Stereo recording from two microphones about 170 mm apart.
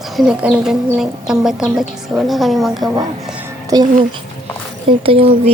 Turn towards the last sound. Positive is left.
turn(degrees=-35)  # may be behind; listen again after turning